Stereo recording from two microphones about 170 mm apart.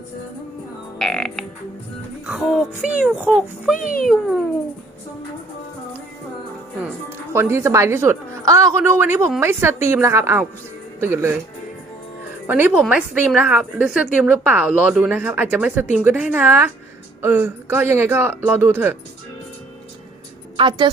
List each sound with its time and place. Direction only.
0.9 s music: centre (ahead or behind)
2.2 s speech: 5° right (ahead or behind)
7.3 s a woman's voice: 15° right (ahead or behind)
12.5 s a woman's voice: 10° right (ahead or behind)
20.6 s a woman's voice: 30° right (ahead or behind)